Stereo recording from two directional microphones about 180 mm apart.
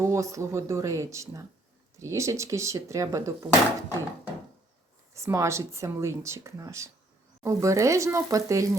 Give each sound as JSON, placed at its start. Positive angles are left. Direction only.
{"t": 0.0, "sound": "speech", "side_deg": -15}
{"t": 5.1, "sound": "speech", "side_deg": -15}